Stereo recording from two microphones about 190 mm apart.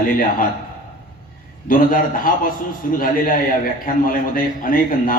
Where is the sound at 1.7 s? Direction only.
45° left (ahead or behind).